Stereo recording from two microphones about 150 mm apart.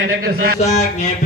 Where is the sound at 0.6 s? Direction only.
50° left (ahead or behind).